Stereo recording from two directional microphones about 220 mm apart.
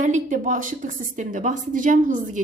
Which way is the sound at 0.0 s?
35° right (ahead or behind).